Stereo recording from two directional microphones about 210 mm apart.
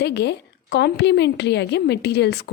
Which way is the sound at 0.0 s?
55° left (ahead or behind).